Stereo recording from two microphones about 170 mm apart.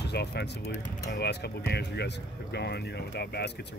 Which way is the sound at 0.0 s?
75° left (ahead or behind).